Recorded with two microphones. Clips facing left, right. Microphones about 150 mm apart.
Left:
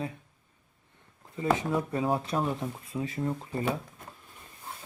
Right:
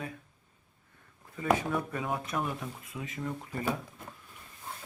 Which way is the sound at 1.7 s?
30° left (ahead or behind).